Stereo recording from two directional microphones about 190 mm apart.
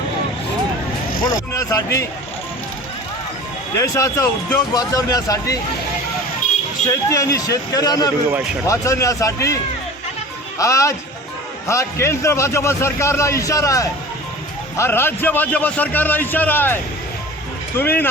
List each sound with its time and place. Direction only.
1.5 s a man's voice: 15° left (ahead or behind)
3.8 s a man's voice: 15° left (ahead or behind)
6.8 s a man's voice: 15° left (ahead or behind)
10.6 s a man's voice: 15° left (ahead or behind)